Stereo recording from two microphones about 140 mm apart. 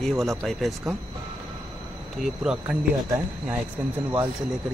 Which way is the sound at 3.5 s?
10° right (ahead or behind).